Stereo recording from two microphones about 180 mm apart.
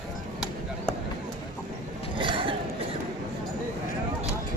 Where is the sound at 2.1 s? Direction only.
25° right (ahead or behind).